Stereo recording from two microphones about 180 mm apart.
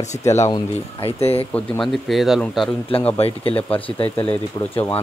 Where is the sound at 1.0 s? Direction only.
35° left (ahead or behind).